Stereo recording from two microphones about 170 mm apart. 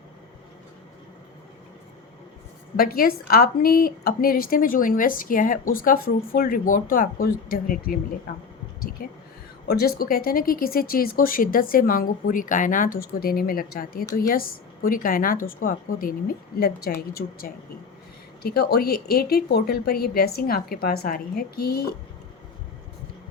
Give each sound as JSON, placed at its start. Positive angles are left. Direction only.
{"t": 2.7, "sound": "a woman's voice", "side_deg": 60}
{"t": 9.0, "sound": "a woman's voice", "side_deg": 55}